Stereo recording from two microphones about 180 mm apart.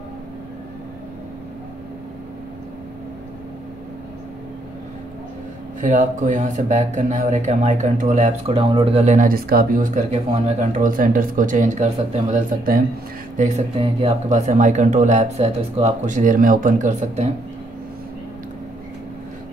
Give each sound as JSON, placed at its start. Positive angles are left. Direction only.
{"t": 5.8, "sound": "speech", "side_deg": -45}